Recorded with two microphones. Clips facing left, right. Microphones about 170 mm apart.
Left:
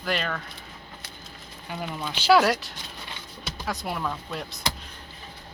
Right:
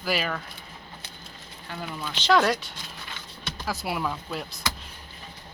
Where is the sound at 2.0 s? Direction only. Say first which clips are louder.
Left 2 dB; 5° left (ahead or behind).